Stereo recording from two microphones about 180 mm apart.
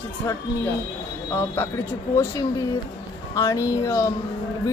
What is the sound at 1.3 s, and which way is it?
Speech, 10° left (ahead or behind).